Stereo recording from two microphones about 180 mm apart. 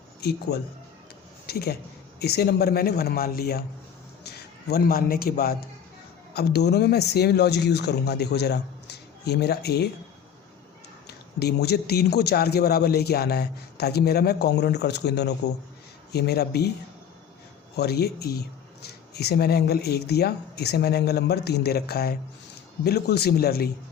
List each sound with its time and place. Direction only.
0.2 s a man's voice: 65° left (ahead or behind)
11.0 s speech: 65° left (ahead or behind)
17.7 s speech: 65° left (ahead or behind)